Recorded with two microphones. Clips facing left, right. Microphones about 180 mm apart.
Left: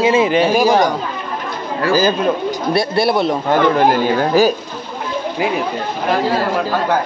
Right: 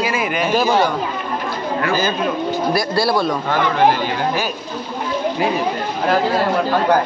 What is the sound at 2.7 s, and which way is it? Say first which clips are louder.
Speech: left 4 dB; 25° left (ahead or behind).